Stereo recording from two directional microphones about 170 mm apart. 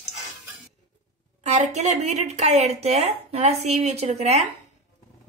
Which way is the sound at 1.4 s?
40° right (ahead or behind).